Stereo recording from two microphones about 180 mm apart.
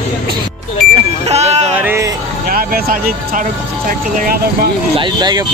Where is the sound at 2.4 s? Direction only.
55° right (ahead or behind).